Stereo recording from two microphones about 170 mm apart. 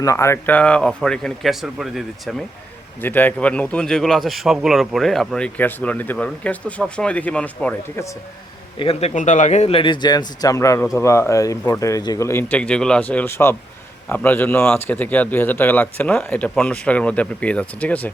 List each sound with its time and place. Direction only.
0.0 s speech: 20° left (ahead or behind); by 2.3 s centre (ahead or behind)
3.0 s speech: 10° left (ahead or behind)
8.8 s speech: 35° left (ahead or behind); by 18.1 s 10° left (ahead or behind)